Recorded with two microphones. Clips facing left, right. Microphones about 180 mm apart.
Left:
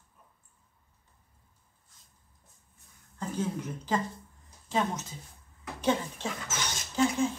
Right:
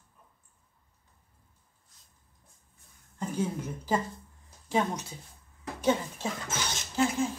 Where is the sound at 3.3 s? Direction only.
10° right (ahead or behind).